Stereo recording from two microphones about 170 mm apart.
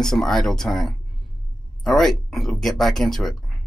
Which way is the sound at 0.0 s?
5° left (ahead or behind).